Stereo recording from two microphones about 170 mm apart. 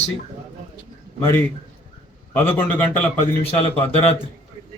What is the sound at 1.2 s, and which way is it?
A man's voice, 15° left (ahead or behind).